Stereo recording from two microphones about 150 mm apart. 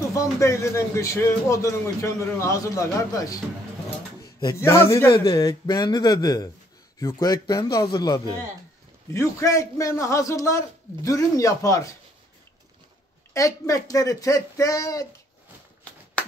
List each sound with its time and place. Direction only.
0.1 s a man's voice: 20° left (ahead or behind)
13.3 s a man's voice: 20° left (ahead or behind)
16.2 s a sound: 10° left (ahead or behind)